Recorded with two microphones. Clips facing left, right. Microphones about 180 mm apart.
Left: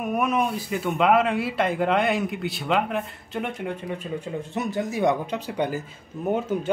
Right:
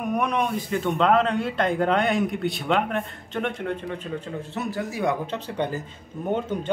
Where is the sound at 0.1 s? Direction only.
5° left (ahead or behind).